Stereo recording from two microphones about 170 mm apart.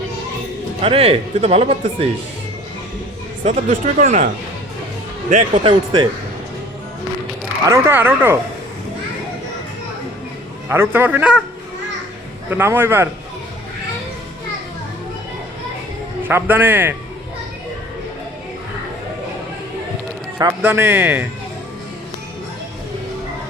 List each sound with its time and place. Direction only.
0.8 s speech: 35° right (ahead or behind)
3.4 s speech: 45° right (ahead or behind)
5.3 s speech: 40° right (ahead or behind)
7.7 s speech: 15° right (ahead or behind)
10.7 s speech: 10° right (ahead or behind)
12.5 s speech: 10° right (ahead or behind)
16.2 s speech: 10° right (ahead or behind)
20.4 s speech: 15° right (ahead or behind)